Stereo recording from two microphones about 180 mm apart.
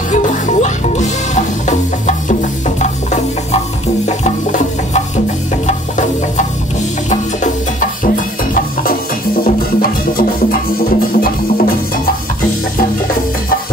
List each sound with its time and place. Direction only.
0.1 s music: 45° left (ahead or behind)
9.4 s music: 55° left (ahead or behind)